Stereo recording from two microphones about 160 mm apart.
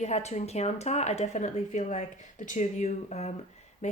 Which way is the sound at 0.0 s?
45° left (ahead or behind).